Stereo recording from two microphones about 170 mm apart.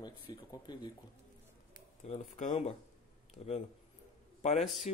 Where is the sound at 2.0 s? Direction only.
40° left (ahead or behind).